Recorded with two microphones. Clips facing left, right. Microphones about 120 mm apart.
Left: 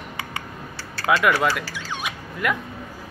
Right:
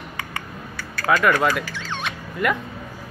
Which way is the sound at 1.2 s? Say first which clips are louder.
Right 2 dB; 5° left (ahead or behind).